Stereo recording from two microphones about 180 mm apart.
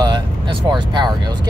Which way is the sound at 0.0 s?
25° right (ahead or behind).